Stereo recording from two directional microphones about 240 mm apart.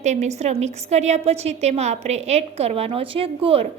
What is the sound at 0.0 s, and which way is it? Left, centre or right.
A woman's voice, right.